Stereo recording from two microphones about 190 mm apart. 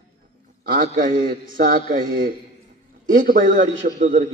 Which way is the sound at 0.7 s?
50° right (ahead or behind).